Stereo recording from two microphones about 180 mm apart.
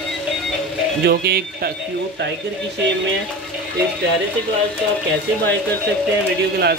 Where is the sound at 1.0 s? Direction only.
60° right (ahead or behind).